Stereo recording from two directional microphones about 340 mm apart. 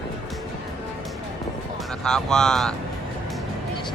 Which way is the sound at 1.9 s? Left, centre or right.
Centre.